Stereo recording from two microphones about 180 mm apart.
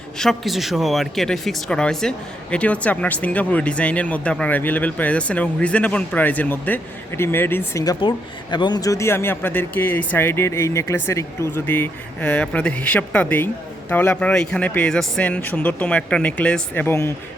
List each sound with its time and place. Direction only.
0.2 s speech: centre (ahead or behind)